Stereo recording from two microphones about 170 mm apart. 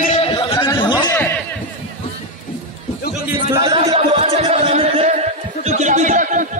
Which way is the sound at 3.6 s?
30° right (ahead or behind).